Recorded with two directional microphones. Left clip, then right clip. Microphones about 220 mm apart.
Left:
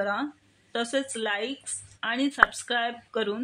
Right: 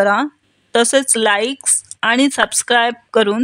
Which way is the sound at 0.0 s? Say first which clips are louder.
Right 14 dB; 50° right (ahead or behind).